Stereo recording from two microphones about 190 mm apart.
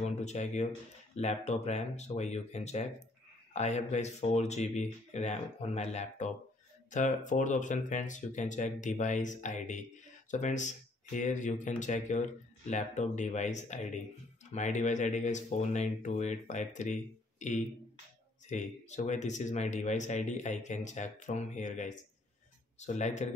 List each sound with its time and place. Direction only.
0.0 s speech: 35° left (ahead or behind)